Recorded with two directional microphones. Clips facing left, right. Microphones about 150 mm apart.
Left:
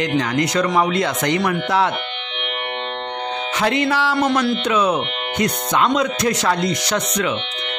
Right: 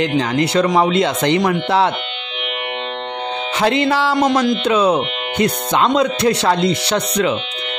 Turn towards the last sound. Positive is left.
turn(degrees=-30)  # may be behind; listen again after turning